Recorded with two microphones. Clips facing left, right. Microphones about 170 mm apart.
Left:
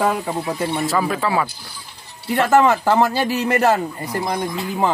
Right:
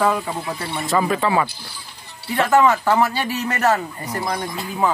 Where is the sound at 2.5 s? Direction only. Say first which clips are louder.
Left 1 dB; 35° left (ahead or behind).